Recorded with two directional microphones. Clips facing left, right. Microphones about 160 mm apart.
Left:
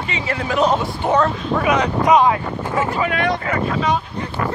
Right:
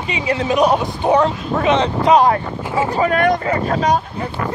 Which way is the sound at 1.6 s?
25° right (ahead or behind).